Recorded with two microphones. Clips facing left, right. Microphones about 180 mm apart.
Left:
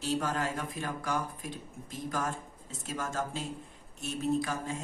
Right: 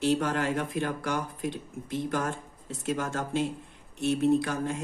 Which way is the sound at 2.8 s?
65° right (ahead or behind).